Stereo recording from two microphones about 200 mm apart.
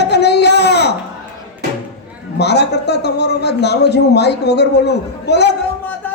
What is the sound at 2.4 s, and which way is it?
A man's voice, 55° left (ahead or behind).